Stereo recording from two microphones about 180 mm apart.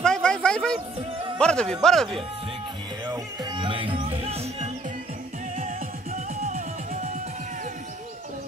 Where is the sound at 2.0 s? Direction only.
30° right (ahead or behind).